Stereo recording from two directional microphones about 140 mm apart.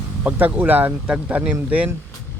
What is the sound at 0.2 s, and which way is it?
Speech, 10° right (ahead or behind).